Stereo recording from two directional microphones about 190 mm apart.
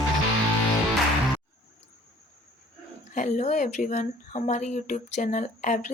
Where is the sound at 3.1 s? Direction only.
40° left (ahead or behind).